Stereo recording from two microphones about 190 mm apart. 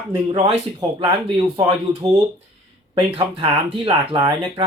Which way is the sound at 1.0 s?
25° right (ahead or behind).